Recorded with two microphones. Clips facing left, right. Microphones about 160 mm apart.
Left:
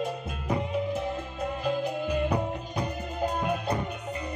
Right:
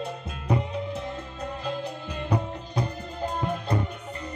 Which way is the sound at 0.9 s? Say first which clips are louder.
Left 3 dB; 10° left (ahead or behind).